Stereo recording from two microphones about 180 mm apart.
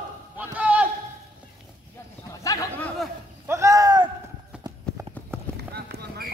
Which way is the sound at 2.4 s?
20° left (ahead or behind).